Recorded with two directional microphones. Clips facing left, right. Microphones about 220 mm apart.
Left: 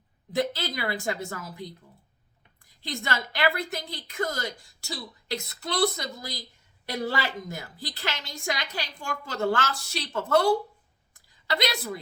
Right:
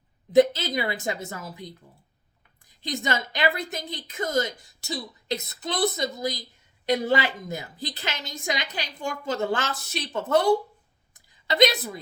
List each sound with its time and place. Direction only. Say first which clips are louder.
0.3 s a woman's voice: right 9 dB; 20° right (ahead or behind)
2.6 s a woman's voice: right 4 dB; 20° right (ahead or behind)
11.1 s a sound: right 2 dB; 20° right (ahead or behind)